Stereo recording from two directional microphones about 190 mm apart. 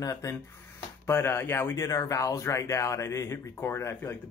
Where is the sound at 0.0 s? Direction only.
15° left (ahead or behind).